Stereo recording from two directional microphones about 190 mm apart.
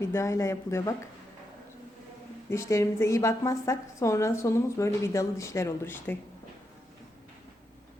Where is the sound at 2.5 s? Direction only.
15° left (ahead or behind).